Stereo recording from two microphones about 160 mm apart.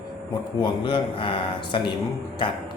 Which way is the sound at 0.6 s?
30° left (ahead or behind).